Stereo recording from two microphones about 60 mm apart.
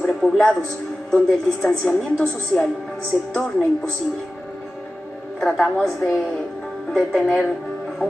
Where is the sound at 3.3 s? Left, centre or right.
Centre.